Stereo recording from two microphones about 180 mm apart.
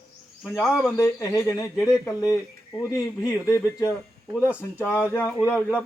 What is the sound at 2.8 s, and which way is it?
A man's voice, 15° left (ahead or behind).